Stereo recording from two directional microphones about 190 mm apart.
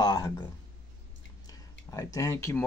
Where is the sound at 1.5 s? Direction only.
20° left (ahead or behind).